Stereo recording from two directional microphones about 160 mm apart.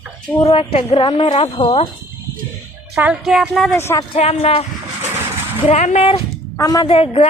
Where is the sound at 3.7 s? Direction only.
15° left (ahead or behind).